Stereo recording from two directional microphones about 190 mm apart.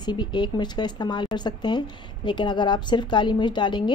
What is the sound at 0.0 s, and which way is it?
Speech, 25° left (ahead or behind).